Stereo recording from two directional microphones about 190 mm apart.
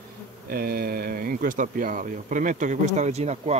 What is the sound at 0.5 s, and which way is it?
Speech, 50° right (ahead or behind).